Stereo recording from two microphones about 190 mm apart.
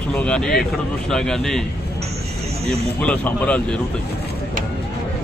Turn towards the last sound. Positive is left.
turn(degrees=5)  # may be behind; listen again after turning